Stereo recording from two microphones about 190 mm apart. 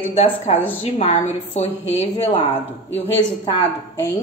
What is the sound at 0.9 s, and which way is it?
A woman's voice, 35° left (ahead or behind).